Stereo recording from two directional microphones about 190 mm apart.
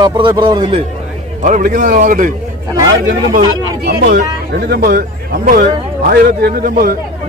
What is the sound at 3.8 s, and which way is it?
Speech, 55° right (ahead or behind).